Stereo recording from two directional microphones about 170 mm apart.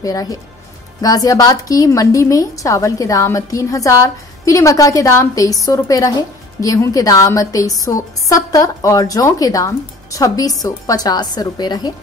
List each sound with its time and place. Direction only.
0.0 s a woman's voice: 20° left (ahead or behind)